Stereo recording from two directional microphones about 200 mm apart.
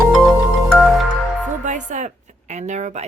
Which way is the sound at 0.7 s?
Centre (ahead or behind).